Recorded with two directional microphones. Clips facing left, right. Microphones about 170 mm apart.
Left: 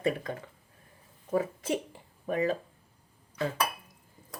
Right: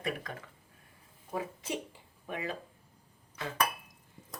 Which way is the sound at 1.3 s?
55° left (ahead or behind).